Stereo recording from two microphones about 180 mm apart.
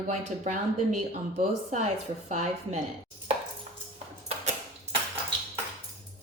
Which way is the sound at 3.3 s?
30° right (ahead or behind).